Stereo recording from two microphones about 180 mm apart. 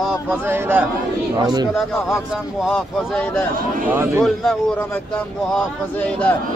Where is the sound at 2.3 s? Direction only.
Centre (ahead or behind).